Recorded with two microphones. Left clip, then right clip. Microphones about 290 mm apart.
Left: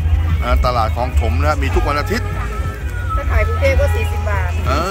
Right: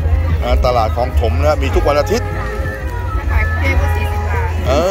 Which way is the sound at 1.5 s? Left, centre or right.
Left.